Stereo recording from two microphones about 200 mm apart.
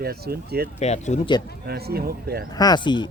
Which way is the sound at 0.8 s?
35° left (ahead or behind).